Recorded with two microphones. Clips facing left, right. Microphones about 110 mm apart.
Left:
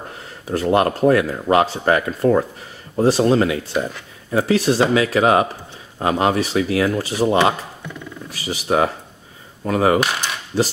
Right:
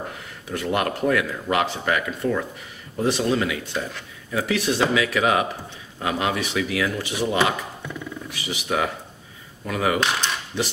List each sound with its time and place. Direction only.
0.5 s speech: 35° left (ahead or behind)